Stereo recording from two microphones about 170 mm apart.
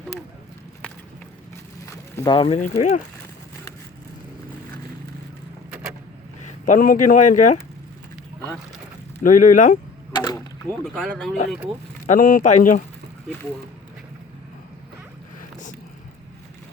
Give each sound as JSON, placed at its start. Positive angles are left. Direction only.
{"t": 1.9, "sound": "a sound", "side_deg": 25}
{"t": 2.6, "sound": "speech", "side_deg": 45}
{"t": 6.7, "sound": "speech", "side_deg": 50}
{"t": 9.2, "sound": "speech", "side_deg": 50}
{"t": 10.9, "sound": "speech", "side_deg": 0}
{"t": 12.0, "sound": "speech", "side_deg": 50}